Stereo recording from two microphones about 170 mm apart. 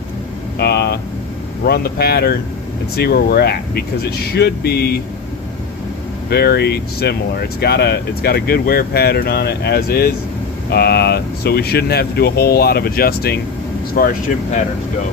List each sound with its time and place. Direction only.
0.6 s air conditioning: 70° left (ahead or behind)
1.6 s speech: 65° left (ahead or behind)
6.3 s speech: 70° left (ahead or behind)